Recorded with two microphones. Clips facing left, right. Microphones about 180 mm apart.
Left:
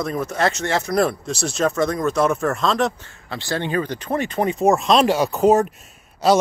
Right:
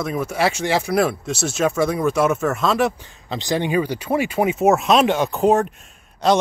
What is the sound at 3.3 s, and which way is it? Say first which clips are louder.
Speech: right 3 dB; 15° right (ahead or behind).